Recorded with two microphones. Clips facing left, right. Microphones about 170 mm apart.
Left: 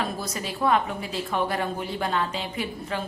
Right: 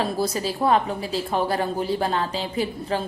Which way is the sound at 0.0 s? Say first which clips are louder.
Right 6 dB; 30° right (ahead or behind).